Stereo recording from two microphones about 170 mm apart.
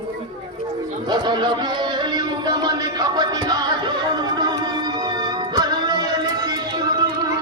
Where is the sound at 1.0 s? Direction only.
25° right (ahead or behind).